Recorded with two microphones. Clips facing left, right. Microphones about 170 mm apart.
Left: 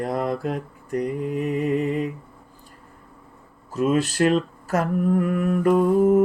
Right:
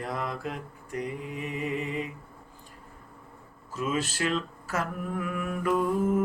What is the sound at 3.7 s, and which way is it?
Mantra, 45° left (ahead or behind).